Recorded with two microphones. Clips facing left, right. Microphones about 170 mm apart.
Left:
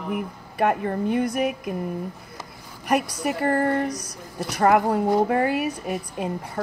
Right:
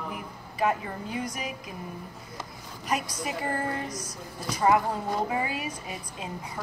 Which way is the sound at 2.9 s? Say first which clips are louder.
Left 7 dB; 65° left (ahead or behind).